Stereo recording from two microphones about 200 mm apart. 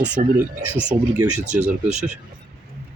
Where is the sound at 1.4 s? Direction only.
35° right (ahead or behind).